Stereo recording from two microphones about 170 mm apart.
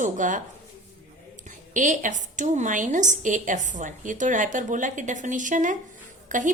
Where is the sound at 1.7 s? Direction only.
50° right (ahead or behind).